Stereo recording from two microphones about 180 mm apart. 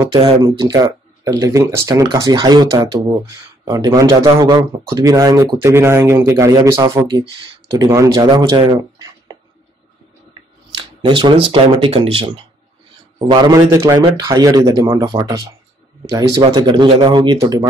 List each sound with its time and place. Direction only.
0.1 s speech: 20° right (ahead or behind)
10.7 s speech: 25° right (ahead or behind)
13.3 s speech: 20° right (ahead or behind)